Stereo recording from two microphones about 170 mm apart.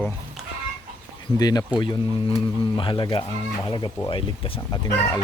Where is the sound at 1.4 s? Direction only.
25° left (ahead or behind).